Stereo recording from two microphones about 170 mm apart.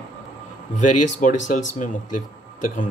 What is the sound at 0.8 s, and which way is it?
Speech, 50° left (ahead or behind).